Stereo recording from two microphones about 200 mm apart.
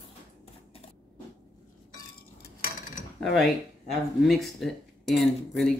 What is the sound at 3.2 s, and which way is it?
Speech, centre (ahead or behind).